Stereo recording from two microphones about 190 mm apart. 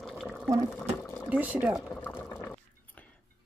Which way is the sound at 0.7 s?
10° left (ahead or behind).